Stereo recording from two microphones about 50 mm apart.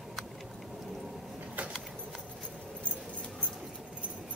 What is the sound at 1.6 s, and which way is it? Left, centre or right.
Keys jangling, right.